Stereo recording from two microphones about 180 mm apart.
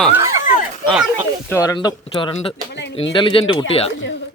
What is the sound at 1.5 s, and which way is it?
Speech, 20° left (ahead or behind).